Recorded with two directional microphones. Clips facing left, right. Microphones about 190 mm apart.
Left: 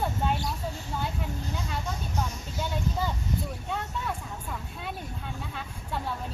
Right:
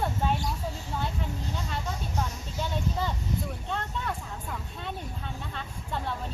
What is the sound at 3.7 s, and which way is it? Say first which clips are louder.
Speech: even; 10° left (ahead or behind).